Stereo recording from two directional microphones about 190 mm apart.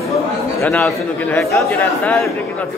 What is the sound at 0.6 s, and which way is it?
A man's voice, 10° left (ahead or behind).